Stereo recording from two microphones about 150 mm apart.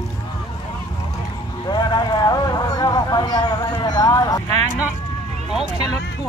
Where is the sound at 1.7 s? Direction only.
30° left (ahead or behind).